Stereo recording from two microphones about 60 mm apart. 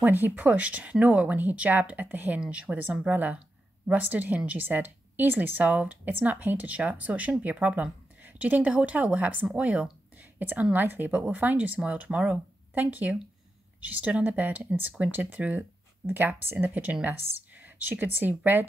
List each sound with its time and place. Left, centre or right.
0.0 s speech: right
10.1 s a sound: right
10.7 s speech: right
16.1 s speech: right